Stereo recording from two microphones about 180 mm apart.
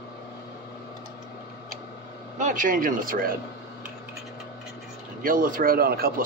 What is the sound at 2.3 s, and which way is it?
Speech, 45° right (ahead or behind).